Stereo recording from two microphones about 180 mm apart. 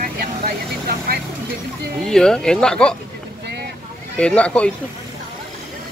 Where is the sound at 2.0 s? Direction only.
5° left (ahead or behind).